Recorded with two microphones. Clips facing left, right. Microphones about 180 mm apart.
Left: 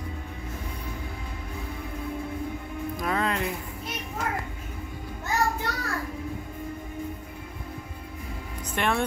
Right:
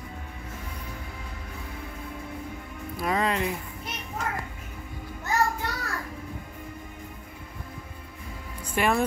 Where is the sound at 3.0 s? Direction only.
5° right (ahead or behind).